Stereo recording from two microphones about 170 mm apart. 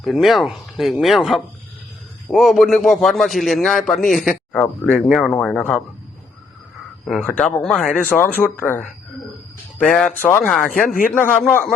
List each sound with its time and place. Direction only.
0.0 s a man's voice: centre (ahead or behind)
7.0 s a man's voice: 5° left (ahead or behind)
10.8 s speech: 55° left (ahead or behind)
11.1 s speech: 10° left (ahead or behind)